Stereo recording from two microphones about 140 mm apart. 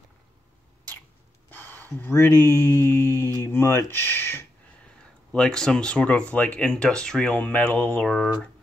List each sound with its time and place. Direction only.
1.5 s a sound: 15° left (ahead or behind)
1.9 s speech: 15° left (ahead or behind)
5.3 s speech: 5° left (ahead or behind)